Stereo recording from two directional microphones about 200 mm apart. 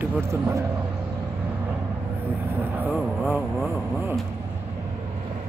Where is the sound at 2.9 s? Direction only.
5° left (ahead or behind).